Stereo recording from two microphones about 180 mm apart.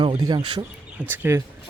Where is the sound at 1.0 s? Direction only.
10° right (ahead or behind).